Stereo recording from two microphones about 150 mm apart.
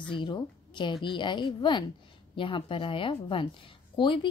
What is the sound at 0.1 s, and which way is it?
A woman's voice, 30° left (ahead or behind).